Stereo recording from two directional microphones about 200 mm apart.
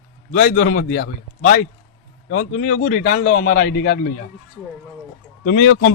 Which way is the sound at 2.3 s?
90° left.